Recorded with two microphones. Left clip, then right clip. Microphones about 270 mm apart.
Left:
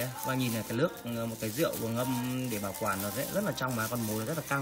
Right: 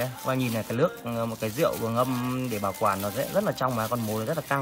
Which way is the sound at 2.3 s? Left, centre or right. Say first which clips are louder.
Right 6 dB; centre.